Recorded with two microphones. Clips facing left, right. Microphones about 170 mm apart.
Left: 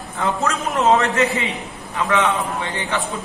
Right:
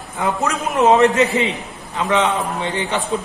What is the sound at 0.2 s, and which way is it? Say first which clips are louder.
A man's voice: right 1 dB; 15° right (ahead or behind).